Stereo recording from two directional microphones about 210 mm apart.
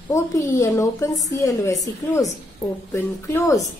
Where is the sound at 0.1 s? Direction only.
15° left (ahead or behind).